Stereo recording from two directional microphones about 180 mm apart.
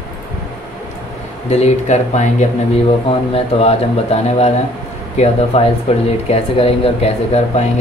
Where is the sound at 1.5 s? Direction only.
35° left (ahead or behind).